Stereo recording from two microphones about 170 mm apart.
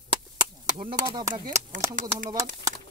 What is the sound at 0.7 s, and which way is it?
Speech, 30° right (ahead or behind).